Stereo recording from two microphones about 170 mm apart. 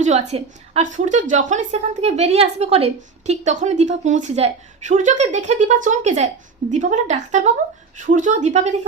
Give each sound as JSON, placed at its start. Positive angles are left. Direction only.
{"t": 0.0, "sound": "a woman's voice", "side_deg": -40}